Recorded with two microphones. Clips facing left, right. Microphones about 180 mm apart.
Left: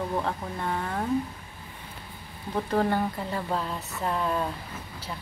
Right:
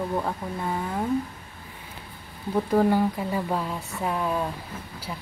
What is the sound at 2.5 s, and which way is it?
Speech, 10° right (ahead or behind).